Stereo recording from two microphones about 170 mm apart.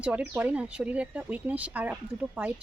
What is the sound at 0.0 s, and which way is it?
Speech, 10° right (ahead or behind).